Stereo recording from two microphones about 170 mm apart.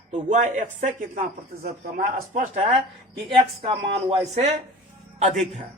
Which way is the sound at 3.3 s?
35° right (ahead or behind).